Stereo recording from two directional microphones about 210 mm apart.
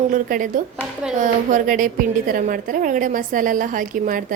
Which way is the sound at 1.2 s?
40° right (ahead or behind).